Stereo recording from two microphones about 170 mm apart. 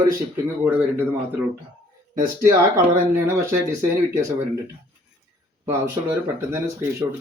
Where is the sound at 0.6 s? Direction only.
10° right (ahead or behind).